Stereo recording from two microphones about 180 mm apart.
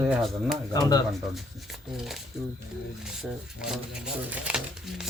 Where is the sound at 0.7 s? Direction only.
20° left (ahead or behind).